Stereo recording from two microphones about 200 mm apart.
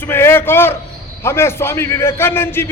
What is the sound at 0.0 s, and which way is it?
A man's voice, 10° left (ahead or behind).